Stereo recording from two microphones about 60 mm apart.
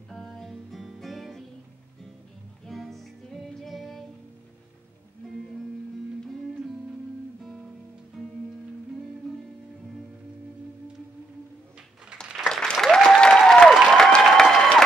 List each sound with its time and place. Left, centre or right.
0.1 s music: centre
2.6 s music: centre
12.4 s applause: centre
12.8 s applause: centre